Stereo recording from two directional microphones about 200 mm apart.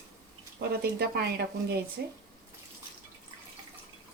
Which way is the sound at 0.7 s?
50° right (ahead or behind).